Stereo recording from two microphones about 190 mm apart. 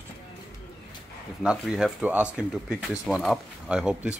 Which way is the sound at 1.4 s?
5° right (ahead or behind).